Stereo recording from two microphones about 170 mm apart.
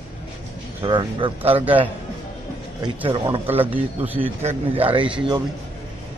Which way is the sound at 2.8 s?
30° right (ahead or behind).